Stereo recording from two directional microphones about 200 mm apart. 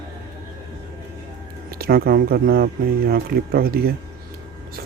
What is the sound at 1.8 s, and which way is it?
Speech, 50° right (ahead or behind).